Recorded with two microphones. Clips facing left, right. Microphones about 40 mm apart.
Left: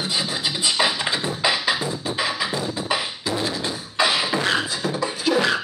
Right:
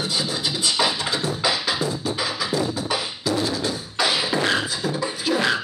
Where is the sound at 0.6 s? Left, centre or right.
Left.